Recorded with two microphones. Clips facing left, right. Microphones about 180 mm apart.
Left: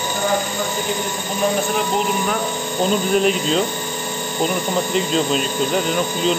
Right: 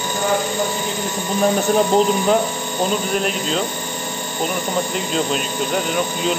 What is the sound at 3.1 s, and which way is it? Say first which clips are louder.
Speech: left 4 dB; centre (ahead or behind).